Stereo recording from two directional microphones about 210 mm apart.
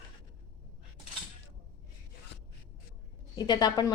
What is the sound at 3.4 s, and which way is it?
Speech, 20° left (ahead or behind).